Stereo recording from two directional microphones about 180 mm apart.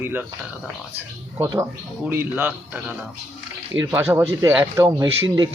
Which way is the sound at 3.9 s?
15° right (ahead or behind).